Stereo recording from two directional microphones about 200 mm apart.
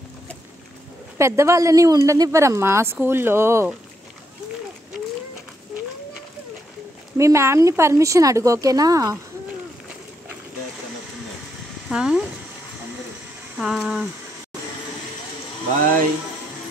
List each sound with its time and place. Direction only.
1.1 s speech: 15° right (ahead or behind)
7.2 s speech: 15° right (ahead or behind)
11.9 s speech: 5° right (ahead or behind)
13.6 s speech: centre (ahead or behind)